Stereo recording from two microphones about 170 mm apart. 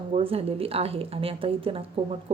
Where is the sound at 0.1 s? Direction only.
35° right (ahead or behind).